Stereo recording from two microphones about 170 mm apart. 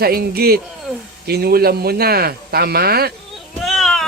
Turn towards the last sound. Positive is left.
turn(degrees=0)  # may be behind; listen again after turning